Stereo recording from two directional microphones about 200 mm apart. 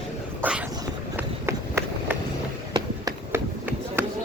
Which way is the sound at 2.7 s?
20° right (ahead or behind).